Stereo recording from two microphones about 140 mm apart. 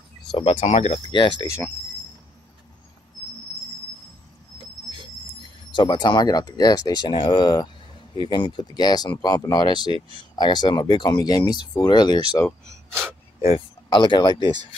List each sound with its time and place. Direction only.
0.4 s speech: 45° left (ahead or behind)
1.1 s speech: 35° left (ahead or behind)
5.8 s speech: 30° left (ahead or behind)
9.9 s speech: 40° right (ahead or behind)
10.3 s speech: 30° left (ahead or behind)
13.8 s speech: 30° left (ahead or behind)